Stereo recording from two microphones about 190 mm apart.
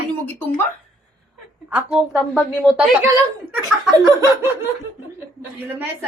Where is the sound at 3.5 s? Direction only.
15° right (ahead or behind).